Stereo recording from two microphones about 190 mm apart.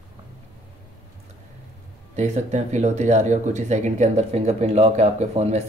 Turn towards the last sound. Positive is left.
turn(degrees=-35)  # may be behind; listen again after turning